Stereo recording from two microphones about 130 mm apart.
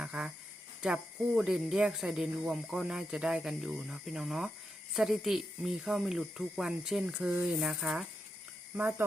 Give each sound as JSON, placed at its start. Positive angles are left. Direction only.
{"t": 0.0, "sound": "a sound", "side_deg": -5}
{"t": 0.8, "sound": "speech", "side_deg": -5}
{"t": 8.7, "sound": "speech", "side_deg": -15}